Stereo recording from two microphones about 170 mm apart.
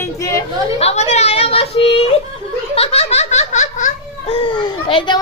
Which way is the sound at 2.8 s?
35° left (ahead or behind).